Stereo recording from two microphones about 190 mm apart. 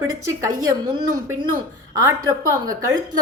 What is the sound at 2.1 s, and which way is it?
Speech, 20° right (ahead or behind).